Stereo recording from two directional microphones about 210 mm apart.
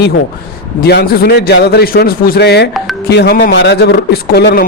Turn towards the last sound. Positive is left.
turn(degrees=50)  # may be behind; listen again after turning